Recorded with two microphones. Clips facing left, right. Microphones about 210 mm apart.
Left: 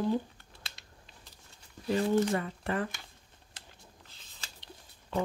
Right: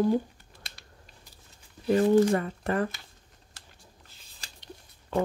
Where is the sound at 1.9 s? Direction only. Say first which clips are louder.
Right 6 dB; 55° right (ahead or behind).